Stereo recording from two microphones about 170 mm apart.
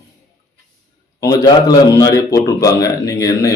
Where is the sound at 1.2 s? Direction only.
20° left (ahead or behind).